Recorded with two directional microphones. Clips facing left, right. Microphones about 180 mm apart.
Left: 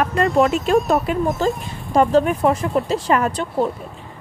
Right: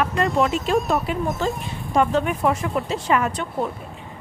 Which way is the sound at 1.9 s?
35° left (ahead or behind).